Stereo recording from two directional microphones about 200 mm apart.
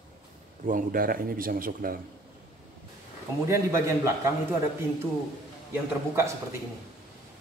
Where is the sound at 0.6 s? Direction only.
45° right (ahead or behind).